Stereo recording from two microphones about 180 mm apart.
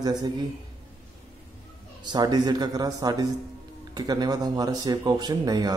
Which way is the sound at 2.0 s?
25° right (ahead or behind).